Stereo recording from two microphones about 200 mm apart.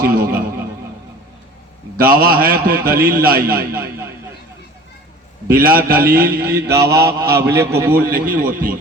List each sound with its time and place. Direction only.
0.0 s a man's voice: 50° right (ahead or behind)
2.0 s a man's voice: 50° right (ahead or behind)
5.5 s a man's voice: 50° right (ahead or behind)